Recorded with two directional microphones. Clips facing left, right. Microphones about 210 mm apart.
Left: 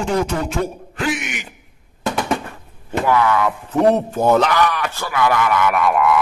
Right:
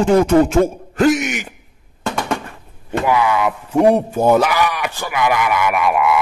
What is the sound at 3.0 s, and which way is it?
Speech, 10° right (ahead or behind).